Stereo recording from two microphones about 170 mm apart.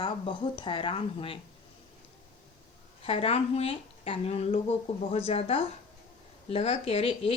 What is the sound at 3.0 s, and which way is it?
A woman's voice, 35° left (ahead or behind).